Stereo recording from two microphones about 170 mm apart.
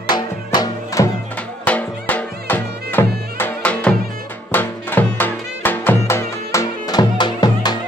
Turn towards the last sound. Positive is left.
turn(degrees=25)  # may be behind; listen again after turning